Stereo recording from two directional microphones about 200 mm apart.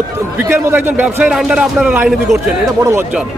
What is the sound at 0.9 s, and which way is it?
A man's voice, 5° right (ahead or behind).